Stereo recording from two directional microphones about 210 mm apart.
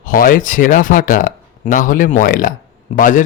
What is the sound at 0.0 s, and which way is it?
Speech, 40° left (ahead or behind).